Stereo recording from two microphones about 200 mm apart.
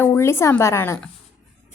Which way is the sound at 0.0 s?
10° left (ahead or behind).